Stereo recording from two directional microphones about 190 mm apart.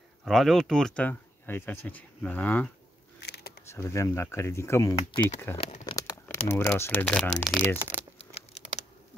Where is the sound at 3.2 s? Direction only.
60° left (ahead or behind).